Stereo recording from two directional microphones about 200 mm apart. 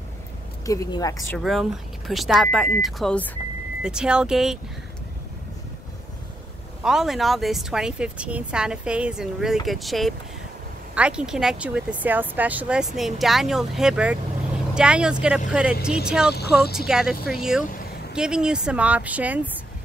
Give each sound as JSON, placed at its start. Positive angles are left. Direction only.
{"t": 0.7, "sound": "speech", "side_deg": 20}
{"t": 1.4, "sound": "speech", "side_deg": 0}
{"t": 6.8, "sound": "speech", "side_deg": 0}